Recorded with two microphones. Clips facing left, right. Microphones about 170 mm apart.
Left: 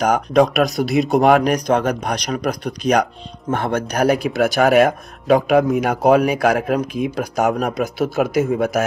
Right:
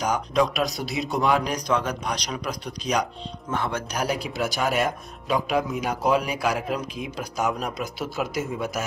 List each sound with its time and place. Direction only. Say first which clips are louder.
0.0 s speech: left 8 dB; 55° left (ahead or behind)